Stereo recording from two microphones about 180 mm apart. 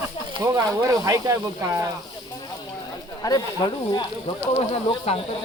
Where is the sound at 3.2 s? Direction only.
25° left (ahead or behind).